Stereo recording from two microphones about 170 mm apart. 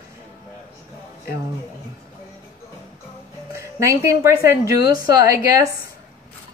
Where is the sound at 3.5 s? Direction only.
15° right (ahead or behind).